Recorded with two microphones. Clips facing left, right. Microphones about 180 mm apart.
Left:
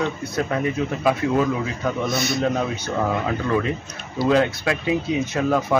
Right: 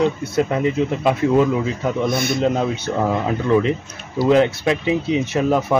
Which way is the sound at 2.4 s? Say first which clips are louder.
Right 3 dB; 25° right (ahead or behind).